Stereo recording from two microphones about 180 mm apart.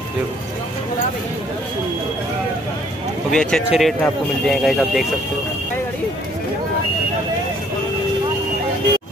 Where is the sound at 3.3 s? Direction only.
5° left (ahead or behind).